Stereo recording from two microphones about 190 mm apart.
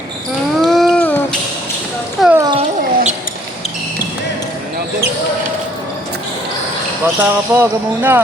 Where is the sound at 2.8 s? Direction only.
45° right (ahead or behind).